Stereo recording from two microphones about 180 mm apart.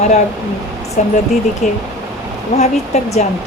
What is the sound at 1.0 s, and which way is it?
A woman's voice, 40° left (ahead or behind).